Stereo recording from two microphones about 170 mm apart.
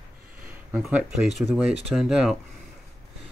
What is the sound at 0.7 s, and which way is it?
Speech, centre (ahead or behind).